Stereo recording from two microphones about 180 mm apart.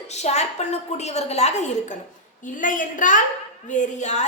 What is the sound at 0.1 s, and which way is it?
A woman's voice, 40° left (ahead or behind).